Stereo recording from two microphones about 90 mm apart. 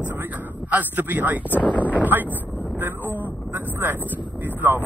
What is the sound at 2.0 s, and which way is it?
Speech, 20° right (ahead or behind).